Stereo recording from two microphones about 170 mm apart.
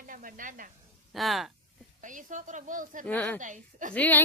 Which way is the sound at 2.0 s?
50° right (ahead or behind).